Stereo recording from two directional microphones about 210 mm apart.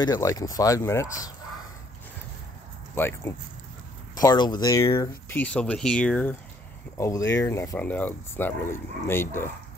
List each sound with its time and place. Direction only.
0.0 s speech: 15° left (ahead or behind)
2.9 s speech: 10° left (ahead or behind)